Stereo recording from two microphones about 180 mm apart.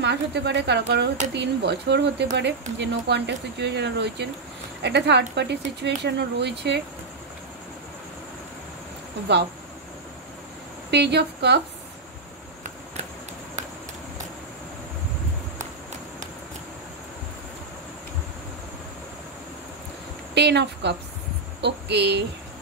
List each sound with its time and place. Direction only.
0.0 s speech: 75° right (ahead or behind)
10.9 s speech: 70° right (ahead or behind)
20.3 s speech: 70° right (ahead or behind)